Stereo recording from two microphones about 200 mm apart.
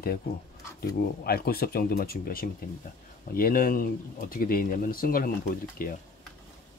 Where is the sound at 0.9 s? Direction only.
50° left (ahead or behind).